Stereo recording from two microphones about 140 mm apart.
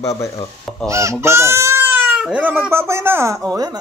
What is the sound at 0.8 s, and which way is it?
Speech, 20° right (ahead or behind).